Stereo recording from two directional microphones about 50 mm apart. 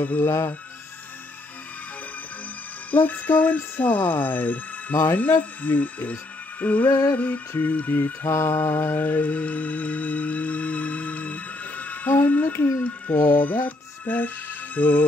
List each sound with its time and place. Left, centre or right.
0.0 s speech: left
2.9 s speech: left
8.3 s mantra: left
8.5 s mantra: left
12.5 s mantra: left
12.8 s speech: left
13.4 s music: left
14.8 s speech: left